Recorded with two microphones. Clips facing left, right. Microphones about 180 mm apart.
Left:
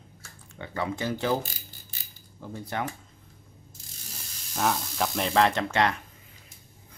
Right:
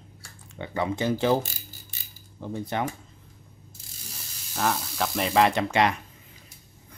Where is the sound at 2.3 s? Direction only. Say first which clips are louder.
Right 4 dB; 20° right (ahead or behind).